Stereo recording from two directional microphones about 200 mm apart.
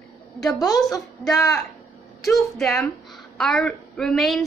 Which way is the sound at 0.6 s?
20° left (ahead or behind).